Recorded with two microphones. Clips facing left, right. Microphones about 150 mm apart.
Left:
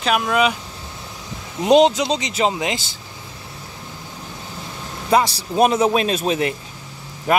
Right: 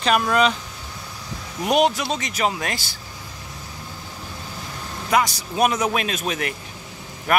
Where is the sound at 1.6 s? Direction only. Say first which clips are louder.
Left 6 dB; 20° left (ahead or behind).